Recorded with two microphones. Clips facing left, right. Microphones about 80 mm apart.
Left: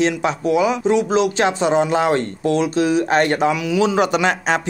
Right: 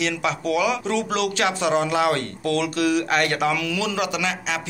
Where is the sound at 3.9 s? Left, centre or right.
Left.